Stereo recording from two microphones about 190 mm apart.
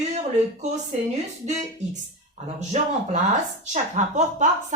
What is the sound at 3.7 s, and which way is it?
A woman's voice, 40° right (ahead or behind).